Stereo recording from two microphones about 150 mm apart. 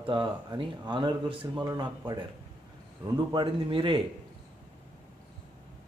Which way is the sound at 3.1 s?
30° right (ahead or behind).